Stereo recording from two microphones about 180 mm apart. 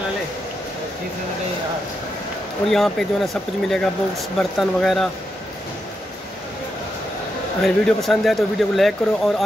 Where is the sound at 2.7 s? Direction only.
Centre (ahead or behind).